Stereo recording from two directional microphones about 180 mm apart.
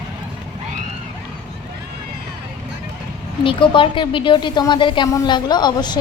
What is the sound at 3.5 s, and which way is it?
Speech, 30° left (ahead or behind).